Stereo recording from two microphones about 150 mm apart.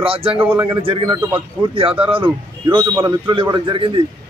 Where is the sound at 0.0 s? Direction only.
40° right (ahead or behind).